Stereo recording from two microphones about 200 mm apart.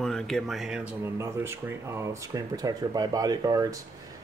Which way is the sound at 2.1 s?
15° right (ahead or behind).